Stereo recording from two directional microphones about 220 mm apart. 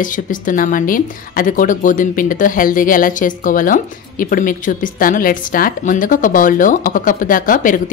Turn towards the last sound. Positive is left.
turn(degrees=35)  # may be behind; listen again after turning